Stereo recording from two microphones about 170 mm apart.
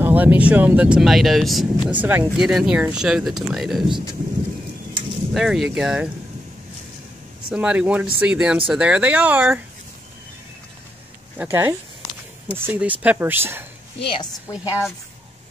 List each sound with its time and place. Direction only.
0.0 s speech: 10° right (ahead or behind)
5.3 s speech: centre (ahead or behind)
7.4 s speech: 5° right (ahead or behind)
11.3 s speech: 10° right (ahead or behind)
14.0 s a woman's voice: 25° left (ahead or behind)